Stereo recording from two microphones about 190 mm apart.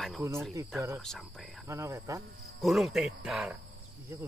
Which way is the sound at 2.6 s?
Centre (ahead or behind).